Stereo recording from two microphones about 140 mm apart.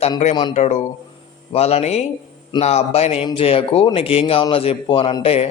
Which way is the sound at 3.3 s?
40° left (ahead or behind).